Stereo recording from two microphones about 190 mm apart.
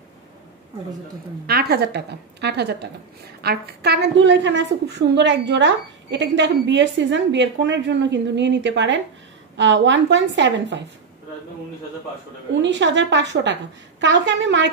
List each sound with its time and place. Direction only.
1.5 s a woman's voice: 55° right (ahead or behind)
12.6 s a woman's voice: 70° right (ahead or behind)